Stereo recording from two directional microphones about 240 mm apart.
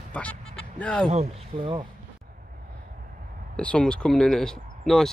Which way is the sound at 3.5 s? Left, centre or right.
Centre.